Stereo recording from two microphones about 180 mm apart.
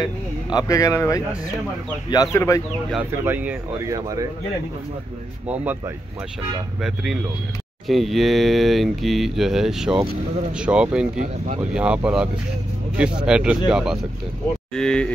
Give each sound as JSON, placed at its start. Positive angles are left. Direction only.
{"t": 0.0, "sound": "speech", "side_deg": 20}
{"t": 2.9, "sound": "speech", "side_deg": -10}
{"t": 6.8, "sound": "speech", "side_deg": 0}